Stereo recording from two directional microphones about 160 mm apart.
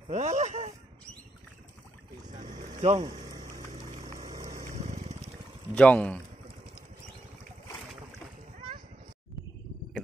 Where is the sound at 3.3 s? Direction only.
25° right (ahead or behind).